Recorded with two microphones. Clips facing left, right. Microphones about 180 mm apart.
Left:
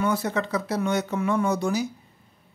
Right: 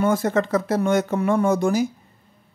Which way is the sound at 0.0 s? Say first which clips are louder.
Right 5 dB; 50° right (ahead or behind).